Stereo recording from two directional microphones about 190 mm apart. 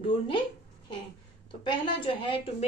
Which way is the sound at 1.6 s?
25° left (ahead or behind).